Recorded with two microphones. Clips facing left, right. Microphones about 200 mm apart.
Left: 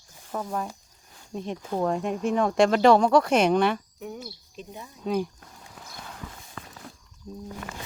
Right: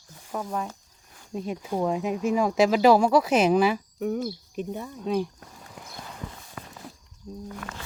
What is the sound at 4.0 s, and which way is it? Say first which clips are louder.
Speech: right 10 dB; 50° right (ahead or behind).